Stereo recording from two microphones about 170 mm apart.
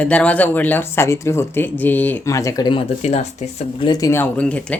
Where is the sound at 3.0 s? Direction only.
40° left (ahead or behind).